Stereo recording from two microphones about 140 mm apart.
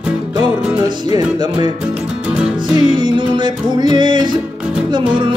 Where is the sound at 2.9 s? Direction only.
35° right (ahead or behind).